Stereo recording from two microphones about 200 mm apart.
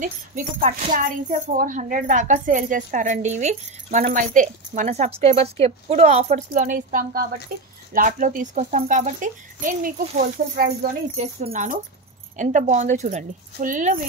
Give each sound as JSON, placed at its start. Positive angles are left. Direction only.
{"t": 0.6, "sound": "a woman's voice", "side_deg": -45}
{"t": 11.1, "sound": "a woman's voice", "side_deg": -35}